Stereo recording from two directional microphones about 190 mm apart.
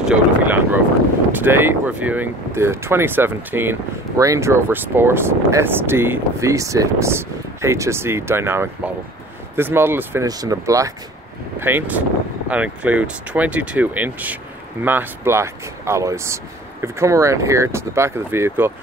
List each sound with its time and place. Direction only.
0.0 s vehicle: 10° right (ahead or behind)
1.4 s speech: 10° right (ahead or behind)